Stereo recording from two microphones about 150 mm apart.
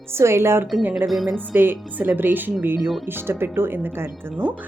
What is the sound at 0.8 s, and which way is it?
Music, centre (ahead or behind).